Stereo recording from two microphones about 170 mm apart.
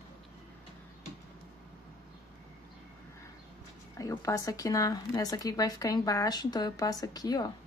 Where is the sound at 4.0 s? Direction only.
20° left (ahead or behind).